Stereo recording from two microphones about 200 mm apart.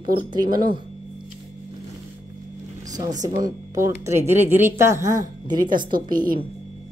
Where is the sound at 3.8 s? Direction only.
15° right (ahead or behind).